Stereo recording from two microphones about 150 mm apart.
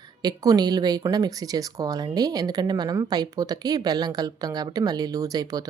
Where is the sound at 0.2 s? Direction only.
25° right (ahead or behind).